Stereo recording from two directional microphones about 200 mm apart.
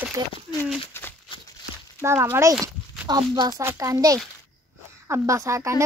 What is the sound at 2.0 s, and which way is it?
Speech, 15° right (ahead or behind).